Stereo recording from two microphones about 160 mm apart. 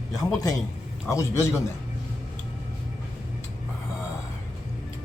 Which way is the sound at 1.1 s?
15° left (ahead or behind).